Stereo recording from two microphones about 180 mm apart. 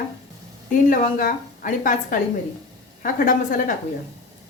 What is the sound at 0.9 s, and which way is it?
A woman's voice, 50° left (ahead or behind).